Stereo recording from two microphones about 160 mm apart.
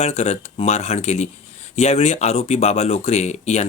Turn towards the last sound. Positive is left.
turn(degrees=45)  # may be behind; listen again after turning